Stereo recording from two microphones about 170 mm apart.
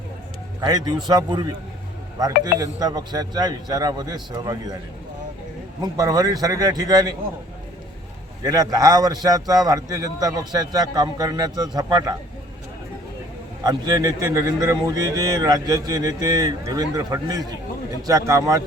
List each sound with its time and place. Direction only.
0.6 s a man's voice: 25° right (ahead or behind)
5.8 s a man's voice: 20° right (ahead or behind)
8.4 s a man's voice: 20° right (ahead or behind)
13.7 s a man's voice: 25° right (ahead or behind)